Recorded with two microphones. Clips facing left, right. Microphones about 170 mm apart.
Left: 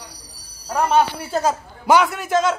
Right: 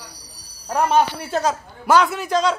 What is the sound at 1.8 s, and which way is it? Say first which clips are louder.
Speech: left 1 dB; 15° left (ahead or behind).